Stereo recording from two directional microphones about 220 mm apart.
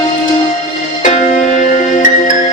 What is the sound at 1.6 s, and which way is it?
Music, 35° left (ahead or behind).